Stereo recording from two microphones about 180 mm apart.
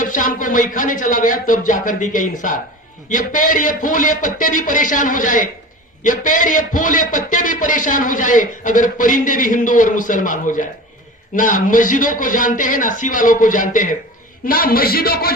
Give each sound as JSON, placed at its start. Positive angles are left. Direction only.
{"t": 0.0, "sound": "a man's voice", "side_deg": 45}